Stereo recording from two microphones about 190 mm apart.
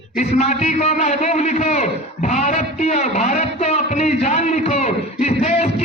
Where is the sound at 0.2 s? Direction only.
35° left (ahead or behind).